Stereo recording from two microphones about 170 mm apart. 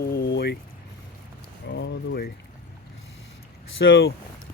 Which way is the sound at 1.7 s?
90° left.